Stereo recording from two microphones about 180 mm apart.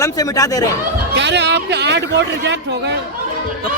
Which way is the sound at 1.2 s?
75° right (ahead or behind).